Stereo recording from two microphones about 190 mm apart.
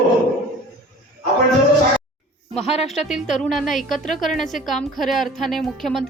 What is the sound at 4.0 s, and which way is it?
Speech, 45° left (ahead or behind).